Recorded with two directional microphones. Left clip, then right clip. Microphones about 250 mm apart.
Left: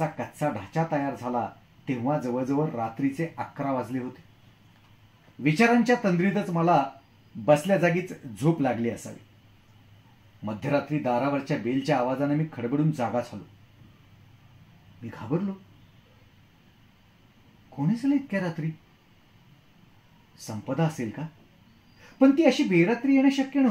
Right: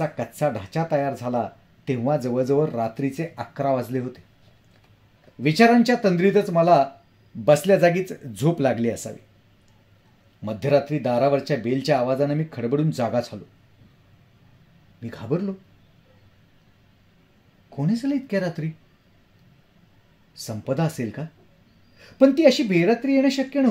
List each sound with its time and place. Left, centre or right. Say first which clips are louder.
1.0 s speech: right 4 dB; right
5.4 s speech: right 5 dB; right
10.4 s speech: right 7 dB; right
15.3 s speech: right 4 dB; right
17.7 s speech: right 1 dB; right
20.4 s speech: right 5 dB; right
22.3 s speech: right 4 dB; right